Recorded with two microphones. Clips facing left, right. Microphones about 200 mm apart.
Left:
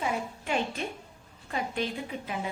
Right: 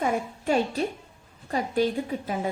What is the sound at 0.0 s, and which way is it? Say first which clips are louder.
A woman's voice: right 5 dB; 40° right (ahead or behind).